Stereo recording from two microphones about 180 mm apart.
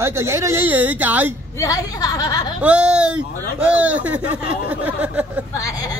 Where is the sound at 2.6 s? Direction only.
5° right (ahead or behind).